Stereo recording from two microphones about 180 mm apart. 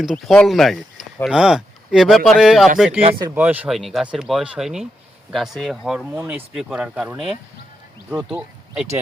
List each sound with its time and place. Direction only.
0.0 s speech: centre (ahead or behind)
3.0 s speech: 30° right (ahead or behind)
3.2 s speech: 10° right (ahead or behind)